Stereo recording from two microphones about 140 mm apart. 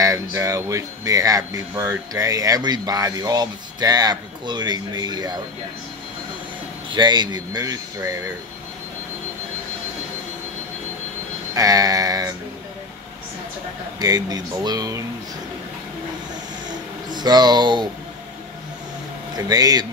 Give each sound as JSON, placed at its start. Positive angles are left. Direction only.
{"t": 0.0, "sound": "speech", "side_deg": -20}
{"t": 6.9, "sound": "speech", "side_deg": -30}
{"t": 11.5, "sound": "speech", "side_deg": -25}
{"t": 13.9, "sound": "speech", "side_deg": -30}
{"t": 17.1, "sound": "speech", "side_deg": -30}
{"t": 19.3, "sound": "speech", "side_deg": -25}